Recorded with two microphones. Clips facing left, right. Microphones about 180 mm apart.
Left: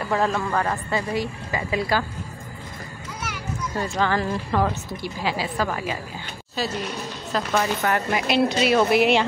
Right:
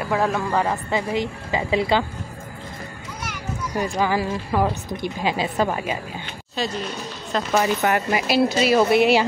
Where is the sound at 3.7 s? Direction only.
15° right (ahead or behind).